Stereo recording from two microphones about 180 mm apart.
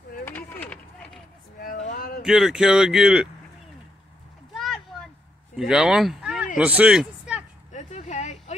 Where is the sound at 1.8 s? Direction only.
50° left (ahead or behind).